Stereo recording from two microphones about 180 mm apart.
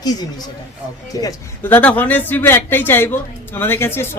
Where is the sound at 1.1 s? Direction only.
15° left (ahead or behind).